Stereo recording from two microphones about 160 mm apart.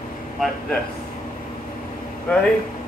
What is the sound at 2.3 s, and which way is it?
Speech, 10° left (ahead or behind).